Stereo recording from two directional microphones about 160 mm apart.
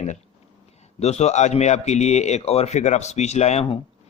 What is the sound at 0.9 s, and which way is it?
Speech, 40° left (ahead or behind).